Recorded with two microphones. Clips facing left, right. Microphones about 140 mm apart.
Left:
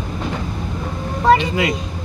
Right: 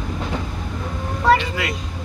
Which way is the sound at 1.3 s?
20° left (ahead or behind).